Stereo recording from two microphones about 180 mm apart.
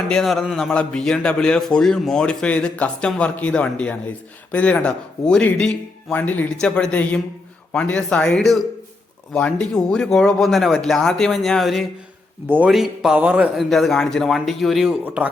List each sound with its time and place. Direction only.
0.1 s a man's voice: centre (ahead or behind)